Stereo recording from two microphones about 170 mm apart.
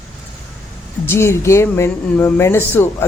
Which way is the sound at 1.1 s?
15° left (ahead or behind).